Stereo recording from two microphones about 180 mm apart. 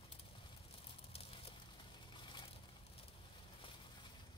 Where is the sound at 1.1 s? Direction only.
30° left (ahead or behind).